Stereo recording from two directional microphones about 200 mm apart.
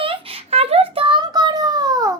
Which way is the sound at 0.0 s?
25° right (ahead or behind).